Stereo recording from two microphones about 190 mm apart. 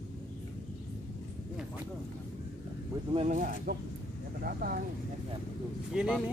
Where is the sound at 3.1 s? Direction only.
40° right (ahead or behind).